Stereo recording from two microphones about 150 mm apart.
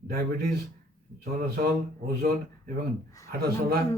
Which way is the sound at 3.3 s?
90° right.